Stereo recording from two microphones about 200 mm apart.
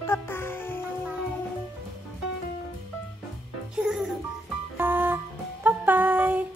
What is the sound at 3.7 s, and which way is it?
Music, 5° right (ahead or behind).